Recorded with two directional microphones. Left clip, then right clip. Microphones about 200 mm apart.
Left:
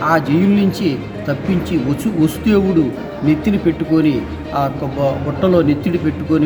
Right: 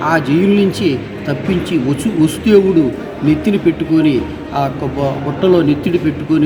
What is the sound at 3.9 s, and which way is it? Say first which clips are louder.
Speech: right 2 dB; 15° left (ahead or behind).